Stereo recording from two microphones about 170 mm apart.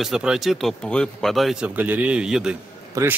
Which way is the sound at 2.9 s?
15° right (ahead or behind).